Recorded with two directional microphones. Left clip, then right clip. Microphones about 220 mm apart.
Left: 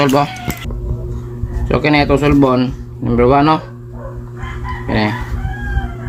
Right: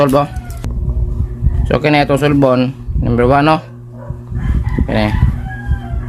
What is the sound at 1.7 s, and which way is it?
Speech, 40° right (ahead or behind).